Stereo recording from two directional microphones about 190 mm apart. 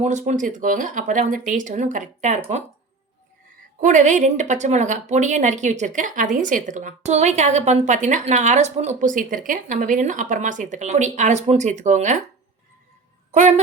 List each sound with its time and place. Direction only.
0.0 s speech: 40° right (ahead or behind)
3.8 s speech: 40° right (ahead or behind)
13.3 s speech: 40° right (ahead or behind)